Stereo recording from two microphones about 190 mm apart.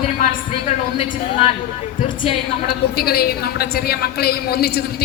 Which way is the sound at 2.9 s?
55° left (ahead or behind).